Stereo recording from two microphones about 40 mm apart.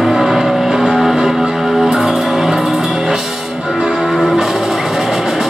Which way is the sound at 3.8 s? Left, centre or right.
Centre.